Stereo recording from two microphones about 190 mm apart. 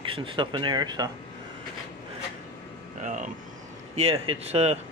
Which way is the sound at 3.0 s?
40° right (ahead or behind).